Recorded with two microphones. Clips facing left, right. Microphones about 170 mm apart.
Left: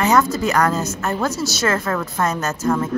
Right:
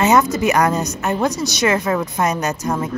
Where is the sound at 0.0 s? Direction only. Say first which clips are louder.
Right 2 dB; 20° right (ahead or behind).